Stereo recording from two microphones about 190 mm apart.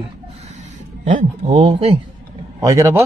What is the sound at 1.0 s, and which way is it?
Speech, 40° right (ahead or behind).